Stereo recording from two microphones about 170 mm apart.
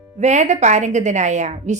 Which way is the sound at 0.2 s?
45° right (ahead or behind).